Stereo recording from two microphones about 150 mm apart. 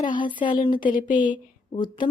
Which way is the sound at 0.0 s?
30° left (ahead or behind).